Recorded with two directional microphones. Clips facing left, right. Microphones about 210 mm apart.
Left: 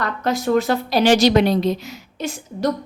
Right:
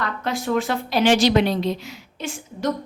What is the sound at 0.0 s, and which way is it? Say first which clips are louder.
A woman's voice: left 4 dB; 40° left (ahead or behind).